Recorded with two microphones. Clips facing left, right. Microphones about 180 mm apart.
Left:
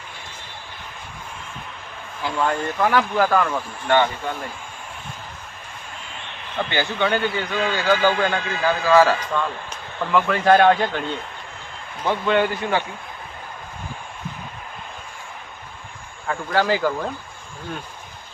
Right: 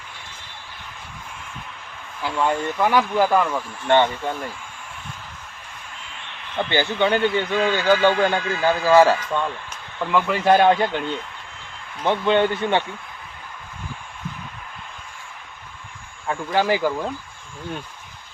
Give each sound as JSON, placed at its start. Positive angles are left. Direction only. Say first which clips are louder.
{"t": 2.2, "sound": "speech", "louder": "right 1 dB", "side_deg": -10}
{"t": 3.8, "sound": "a man's voice", "louder": "right 1 dB", "side_deg": -25}
{"t": 6.6, "sound": "a man's voice", "louder": "right 2 dB", "side_deg": -25}
{"t": 10.1, "sound": "speech", "louder": "left 1 dB", "side_deg": -15}
{"t": 12.0, "sound": "a man's voice", "louder": "right 1 dB", "side_deg": -25}
{"t": 16.2, "sound": "speech", "louder": "even", "side_deg": -15}